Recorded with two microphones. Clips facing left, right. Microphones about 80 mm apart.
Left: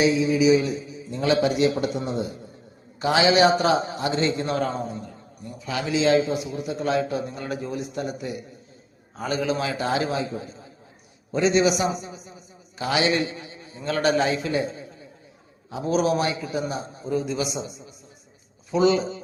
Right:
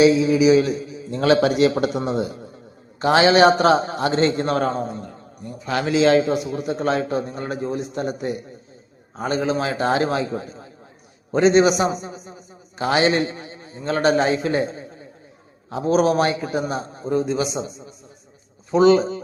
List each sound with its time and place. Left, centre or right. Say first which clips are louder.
0.0 s a man's voice: right 5 dB; right
3.0 s a man's voice: right 4 dB; right
9.2 s a man's voice: right 3 dB; right